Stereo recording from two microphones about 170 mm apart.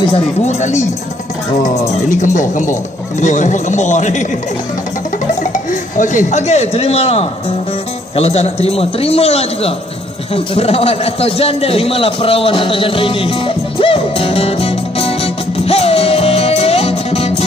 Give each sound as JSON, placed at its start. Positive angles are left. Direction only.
{"t": 0.5, "sound": "a man's voice", "side_deg": 45}
{"t": 5.4, "sound": "a man's voice", "side_deg": 50}
{"t": 10.3, "sound": "a sound", "side_deg": 35}